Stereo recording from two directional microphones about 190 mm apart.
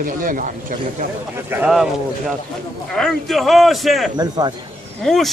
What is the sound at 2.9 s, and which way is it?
A man's voice, centre (ahead or behind).